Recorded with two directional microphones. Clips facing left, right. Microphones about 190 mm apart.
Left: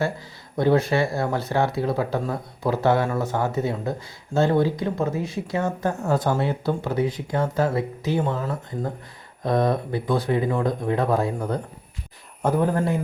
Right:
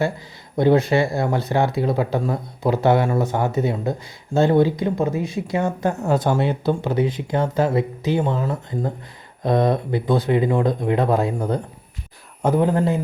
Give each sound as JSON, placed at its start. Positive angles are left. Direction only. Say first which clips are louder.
{"t": 0.5, "sound": "speech", "louder": "right 3 dB", "side_deg": -20}
{"t": 9.4, "sound": "speech", "louder": "right 3 dB", "side_deg": -20}